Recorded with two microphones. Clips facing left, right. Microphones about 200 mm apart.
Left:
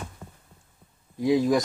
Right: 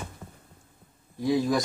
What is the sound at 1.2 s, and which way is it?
Speech, 15° left (ahead or behind).